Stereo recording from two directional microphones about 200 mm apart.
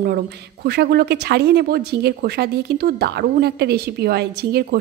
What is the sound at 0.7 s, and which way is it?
A woman's voice, 50° right (ahead or behind).